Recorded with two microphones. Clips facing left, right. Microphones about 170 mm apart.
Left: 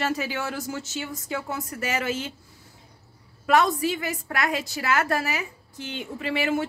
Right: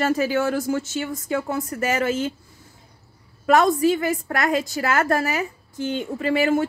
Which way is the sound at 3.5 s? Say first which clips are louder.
Right 5 dB; 45° right (ahead or behind).